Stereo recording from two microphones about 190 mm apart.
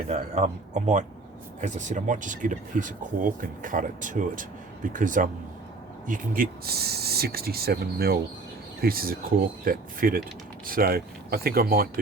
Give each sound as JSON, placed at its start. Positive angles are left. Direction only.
{"t": 0.1, "sound": "a man's voice", "side_deg": -35}